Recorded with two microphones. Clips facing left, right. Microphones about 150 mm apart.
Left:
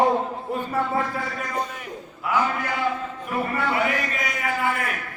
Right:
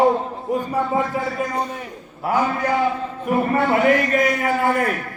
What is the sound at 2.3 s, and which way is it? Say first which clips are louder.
Speech: right 3 dB; 35° right (ahead or behind).